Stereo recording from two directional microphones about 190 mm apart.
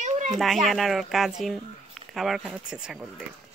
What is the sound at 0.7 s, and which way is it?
A child's voice, centre (ahead or behind).